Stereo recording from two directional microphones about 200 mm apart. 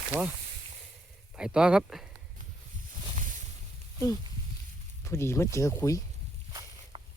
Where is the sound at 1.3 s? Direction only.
5° right (ahead or behind).